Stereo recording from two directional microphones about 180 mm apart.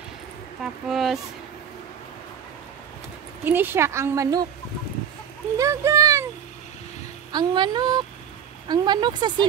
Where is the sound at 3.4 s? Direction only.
10° right (ahead or behind).